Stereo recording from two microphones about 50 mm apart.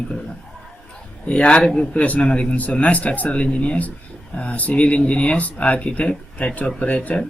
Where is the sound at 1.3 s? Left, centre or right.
Left.